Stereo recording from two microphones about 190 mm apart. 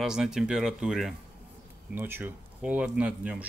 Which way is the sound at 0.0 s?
5° right (ahead or behind).